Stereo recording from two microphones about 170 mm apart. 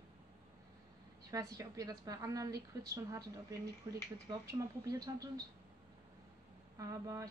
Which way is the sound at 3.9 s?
20° right (ahead or behind).